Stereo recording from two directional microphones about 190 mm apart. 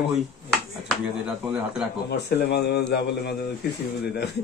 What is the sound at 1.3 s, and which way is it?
Speech, 5° right (ahead or behind).